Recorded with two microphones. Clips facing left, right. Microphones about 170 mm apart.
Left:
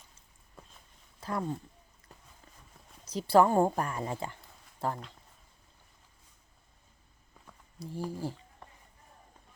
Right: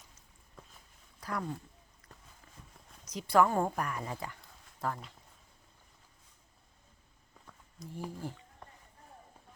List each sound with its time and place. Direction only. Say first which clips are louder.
1.2 s speech: left 3 dB; 25° left (ahead or behind)
3.0 s a woman's voice: left 3 dB; 30° left (ahead or behind)
7.8 s speech: left 5 dB; 35° left (ahead or behind)
8.6 s a sound: right 1 dB; centre (ahead or behind)